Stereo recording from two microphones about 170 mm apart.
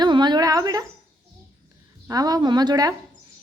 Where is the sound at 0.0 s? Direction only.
25° right (ahead or behind).